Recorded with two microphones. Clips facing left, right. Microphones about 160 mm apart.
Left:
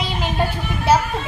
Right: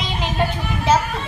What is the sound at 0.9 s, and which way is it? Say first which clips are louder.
Music: left 1 dB; 10° left (ahead or behind).